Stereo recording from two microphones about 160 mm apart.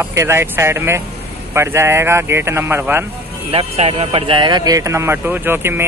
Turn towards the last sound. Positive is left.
turn(degrees=-15)  # may be behind; listen again after turning